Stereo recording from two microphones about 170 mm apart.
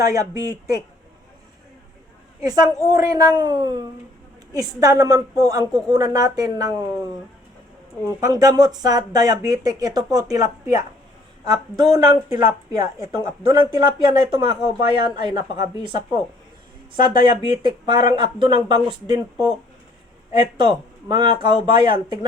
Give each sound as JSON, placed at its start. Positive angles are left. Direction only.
{"t": 0.0, "sound": "speech", "side_deg": -20}
{"t": 2.8, "sound": "speech", "side_deg": -20}
{"t": 8.0, "sound": "speech", "side_deg": -20}
{"t": 20.6, "sound": "speech", "side_deg": -25}